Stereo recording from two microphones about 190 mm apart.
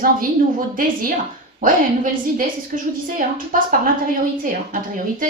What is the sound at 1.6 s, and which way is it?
Speech, 45° right (ahead or behind).